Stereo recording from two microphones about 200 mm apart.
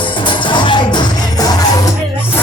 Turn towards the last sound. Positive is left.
turn(degrees=20)  # may be behind; listen again after turning